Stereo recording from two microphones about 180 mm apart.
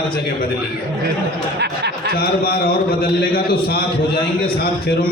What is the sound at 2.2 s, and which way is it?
A man's voice, 60° left (ahead or behind).